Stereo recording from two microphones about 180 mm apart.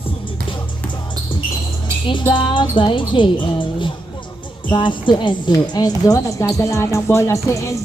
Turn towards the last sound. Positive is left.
turn(degrees=15)  # may be behind; listen again after turning